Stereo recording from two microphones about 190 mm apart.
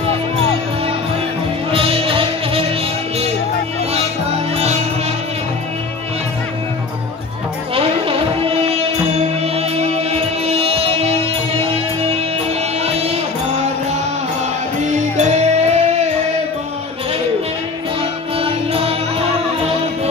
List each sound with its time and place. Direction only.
1.7 s music: 30° right (ahead or behind)
9.4 s music: 35° right (ahead or behind)
12.8 s music: 35° right (ahead or behind)
14.8 s music: 35° right (ahead or behind)
18.4 s music: 30° right (ahead or behind)